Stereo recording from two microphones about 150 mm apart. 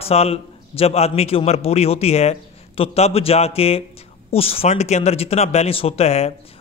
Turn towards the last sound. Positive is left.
turn(degrees=45)  # may be behind; listen again after turning